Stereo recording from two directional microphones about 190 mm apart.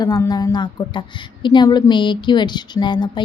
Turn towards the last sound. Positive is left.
turn(degrees=25)  # may be behind; listen again after turning